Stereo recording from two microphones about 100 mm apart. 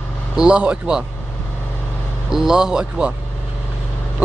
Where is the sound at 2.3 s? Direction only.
5° right (ahead or behind).